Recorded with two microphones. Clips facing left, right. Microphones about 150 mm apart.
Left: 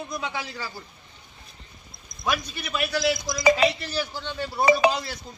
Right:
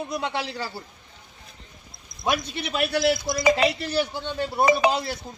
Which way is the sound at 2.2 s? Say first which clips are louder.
Right 3 dB; 30° right (ahead or behind).